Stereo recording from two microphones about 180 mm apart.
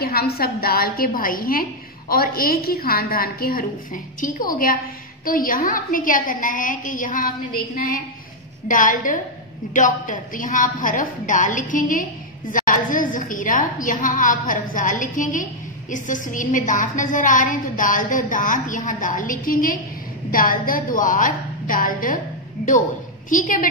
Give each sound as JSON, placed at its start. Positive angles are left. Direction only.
{"t": 0.0, "sound": "a woman's voice", "side_deg": 60}
{"t": 23.3, "sound": "a woman's voice", "side_deg": 45}